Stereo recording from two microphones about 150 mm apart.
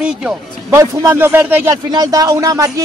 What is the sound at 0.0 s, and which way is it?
Speech, 5° right (ahead or behind).